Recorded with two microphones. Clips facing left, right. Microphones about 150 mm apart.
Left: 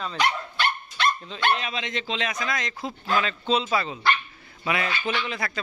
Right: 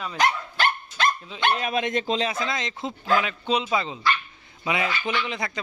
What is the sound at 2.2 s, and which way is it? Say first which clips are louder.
Speech: right 2 dB; 25° right (ahead or behind).